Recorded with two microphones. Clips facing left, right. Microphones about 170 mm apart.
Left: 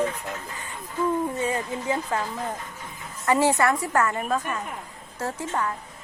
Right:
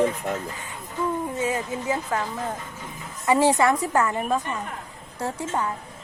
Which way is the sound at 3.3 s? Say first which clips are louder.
Right 2 dB; 15° right (ahead or behind).